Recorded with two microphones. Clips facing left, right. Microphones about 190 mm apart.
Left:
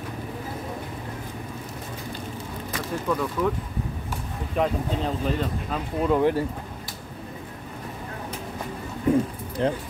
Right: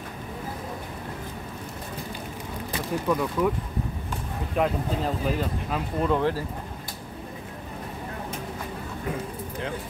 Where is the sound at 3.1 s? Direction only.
10° right (ahead or behind).